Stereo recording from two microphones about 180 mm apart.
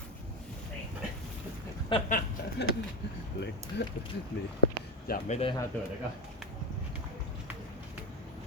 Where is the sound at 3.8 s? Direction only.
65° left (ahead or behind).